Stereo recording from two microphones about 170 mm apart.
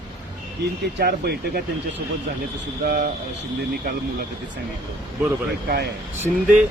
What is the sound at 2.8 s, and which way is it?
Speech, 60° right (ahead or behind).